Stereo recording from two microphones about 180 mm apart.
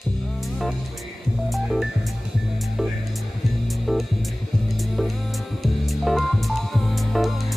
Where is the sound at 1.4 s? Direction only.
Centre (ahead or behind).